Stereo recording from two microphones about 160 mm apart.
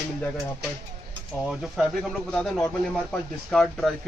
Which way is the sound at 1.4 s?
5° right (ahead or behind).